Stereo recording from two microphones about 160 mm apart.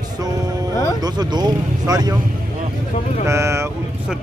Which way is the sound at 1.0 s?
25° right (ahead or behind).